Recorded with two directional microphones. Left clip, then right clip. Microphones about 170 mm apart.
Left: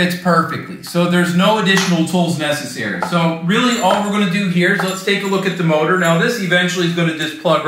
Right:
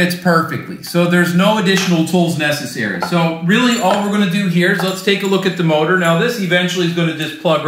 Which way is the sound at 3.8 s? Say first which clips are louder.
Even; 55° right (ahead or behind).